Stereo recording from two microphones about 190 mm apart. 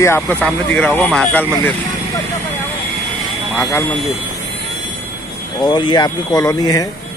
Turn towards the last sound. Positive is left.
turn(degrees=20)  # may be behind; listen again after turning